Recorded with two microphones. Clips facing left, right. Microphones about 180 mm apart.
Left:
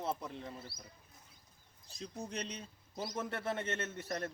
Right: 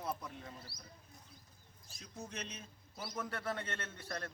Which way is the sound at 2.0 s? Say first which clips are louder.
Left 5 dB; 35° left (ahead or behind).